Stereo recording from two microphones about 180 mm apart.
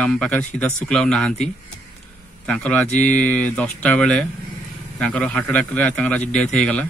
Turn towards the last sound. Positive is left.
turn(degrees=5)  # may be behind; listen again after turning